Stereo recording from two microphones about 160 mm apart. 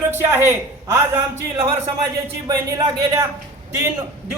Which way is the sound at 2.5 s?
25° right (ahead or behind).